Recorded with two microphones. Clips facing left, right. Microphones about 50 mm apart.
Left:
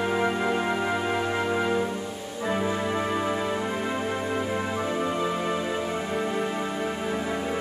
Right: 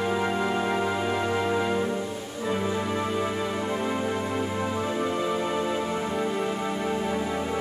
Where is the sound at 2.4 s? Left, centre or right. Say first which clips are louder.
Left 1 dB; centre.